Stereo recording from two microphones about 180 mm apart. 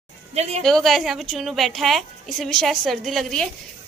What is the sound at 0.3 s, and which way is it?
Speech, 35° right (ahead or behind).